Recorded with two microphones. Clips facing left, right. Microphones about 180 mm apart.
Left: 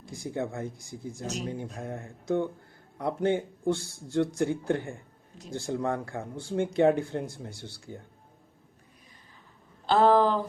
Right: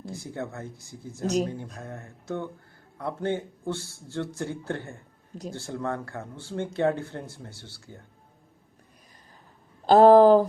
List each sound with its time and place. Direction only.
0.0 s speech: 15° left (ahead or behind)
9.8 s speech: 40° right (ahead or behind)